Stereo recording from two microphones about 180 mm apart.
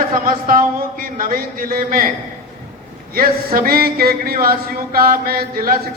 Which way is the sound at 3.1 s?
55° right (ahead or behind).